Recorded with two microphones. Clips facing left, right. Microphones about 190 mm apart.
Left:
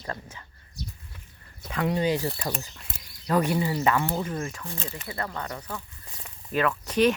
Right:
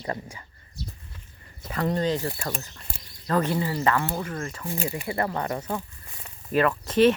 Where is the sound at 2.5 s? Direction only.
Centre (ahead or behind).